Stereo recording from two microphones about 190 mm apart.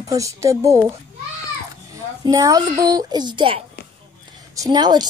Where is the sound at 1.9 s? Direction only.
20° right (ahead or behind).